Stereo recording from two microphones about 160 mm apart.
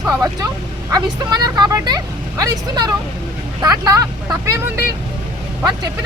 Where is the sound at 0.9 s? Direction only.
25° right (ahead or behind).